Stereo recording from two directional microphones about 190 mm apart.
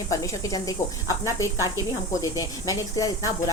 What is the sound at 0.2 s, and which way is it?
Speech, 20° left (ahead or behind).